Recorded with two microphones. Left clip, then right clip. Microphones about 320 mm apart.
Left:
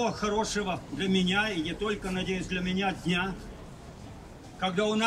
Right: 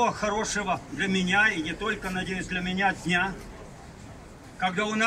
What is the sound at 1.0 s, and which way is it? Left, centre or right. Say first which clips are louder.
Speech: right 5 dB; centre.